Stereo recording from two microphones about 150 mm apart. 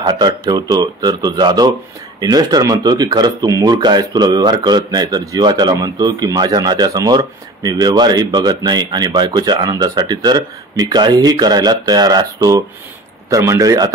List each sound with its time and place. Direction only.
0.0 s speech: 30° right (ahead or behind)